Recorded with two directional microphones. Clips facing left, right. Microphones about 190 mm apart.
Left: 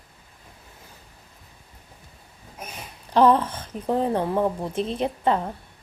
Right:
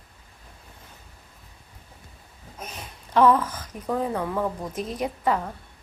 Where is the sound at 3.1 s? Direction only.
30° left (ahead or behind).